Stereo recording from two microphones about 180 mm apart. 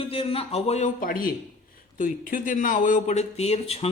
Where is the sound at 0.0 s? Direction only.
30° left (ahead or behind).